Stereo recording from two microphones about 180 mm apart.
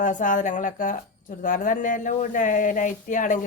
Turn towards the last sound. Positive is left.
turn(degrees=45)  # may be behind; listen again after turning